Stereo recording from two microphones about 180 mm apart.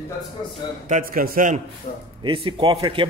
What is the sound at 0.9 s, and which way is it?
Speech, 50° right (ahead or behind).